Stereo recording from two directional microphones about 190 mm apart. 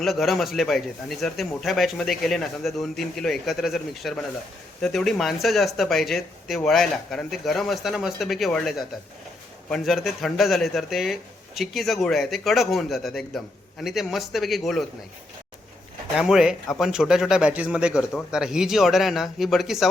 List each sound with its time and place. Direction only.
0.0 s speech: centre (ahead or behind)
16.1 s speech: 5° right (ahead or behind)